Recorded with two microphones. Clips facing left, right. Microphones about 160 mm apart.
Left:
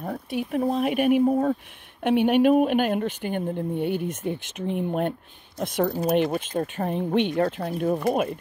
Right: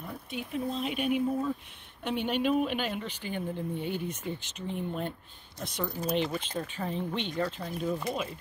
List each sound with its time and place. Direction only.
0.0 s speech: 60° left (ahead or behind)